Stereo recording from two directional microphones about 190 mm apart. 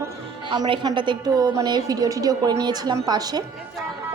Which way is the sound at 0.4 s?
25° right (ahead or behind).